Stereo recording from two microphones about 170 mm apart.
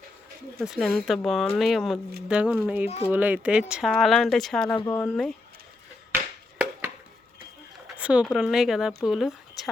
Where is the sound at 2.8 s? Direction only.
35° left (ahead or behind).